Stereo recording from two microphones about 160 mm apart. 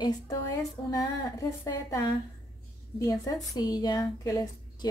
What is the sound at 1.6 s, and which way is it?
A woman's voice, 20° left (ahead or behind).